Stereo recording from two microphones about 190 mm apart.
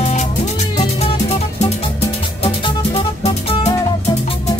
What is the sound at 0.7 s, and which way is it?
Music, 35° left (ahead or behind).